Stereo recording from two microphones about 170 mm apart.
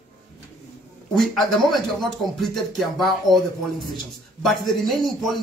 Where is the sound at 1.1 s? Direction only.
Centre (ahead or behind).